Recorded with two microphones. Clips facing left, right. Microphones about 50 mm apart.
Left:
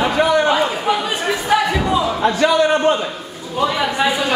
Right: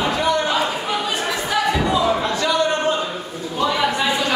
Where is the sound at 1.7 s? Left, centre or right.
Centre.